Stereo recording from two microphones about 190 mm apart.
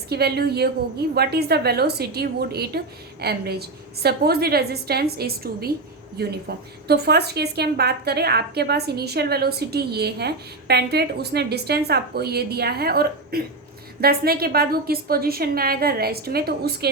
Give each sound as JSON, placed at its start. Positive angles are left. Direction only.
{"t": 0.1, "sound": "a woman's voice", "side_deg": -55}